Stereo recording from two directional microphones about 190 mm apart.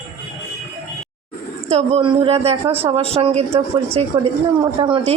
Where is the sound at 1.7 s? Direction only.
30° right (ahead or behind).